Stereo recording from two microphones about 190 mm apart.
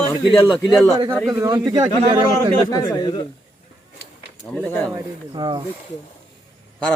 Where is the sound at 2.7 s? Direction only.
20° left (ahead or behind).